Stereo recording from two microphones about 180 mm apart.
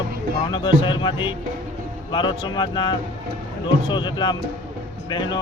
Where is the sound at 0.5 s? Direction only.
25° left (ahead or behind).